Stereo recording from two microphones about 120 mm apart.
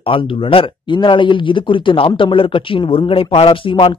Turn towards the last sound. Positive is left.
turn(degrees=50)  # may be behind; listen again after turning